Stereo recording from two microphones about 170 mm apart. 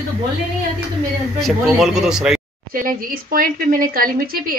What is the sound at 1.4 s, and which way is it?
Speech, 5° right (ahead or behind).